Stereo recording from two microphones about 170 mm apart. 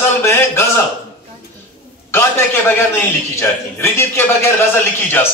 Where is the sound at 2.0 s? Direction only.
15° left (ahead or behind).